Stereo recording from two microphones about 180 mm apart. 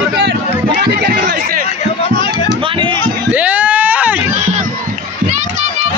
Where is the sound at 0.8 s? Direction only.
65° right (ahead or behind).